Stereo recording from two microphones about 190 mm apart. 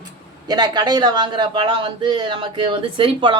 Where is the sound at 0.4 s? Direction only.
20° right (ahead or behind).